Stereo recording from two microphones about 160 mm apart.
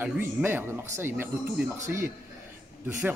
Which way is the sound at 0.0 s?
15° right (ahead or behind).